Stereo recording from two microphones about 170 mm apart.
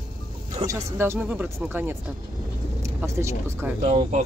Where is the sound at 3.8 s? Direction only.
40° right (ahead or behind).